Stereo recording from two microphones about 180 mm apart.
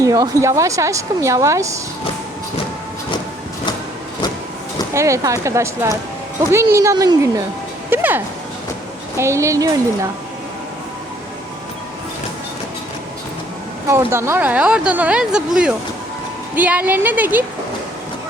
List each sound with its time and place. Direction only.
0.0 s speech: 20° right (ahead or behind)
4.9 s a woman's voice: 15° right (ahead or behind)
7.9 s music: 10° right (ahead or behind)
9.1 s speech: 15° right (ahead or behind)
13.8 s speech: 15° right (ahead or behind)